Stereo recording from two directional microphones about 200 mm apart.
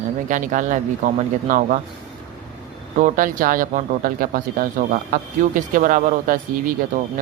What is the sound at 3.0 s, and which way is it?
Speech, 40° right (ahead or behind).